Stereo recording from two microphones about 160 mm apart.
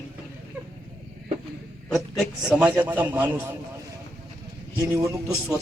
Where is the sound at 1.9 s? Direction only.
Centre (ahead or behind).